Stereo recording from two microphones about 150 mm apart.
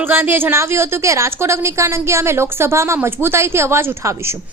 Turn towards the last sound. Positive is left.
turn(degrees=-20)  # may be behind; listen again after turning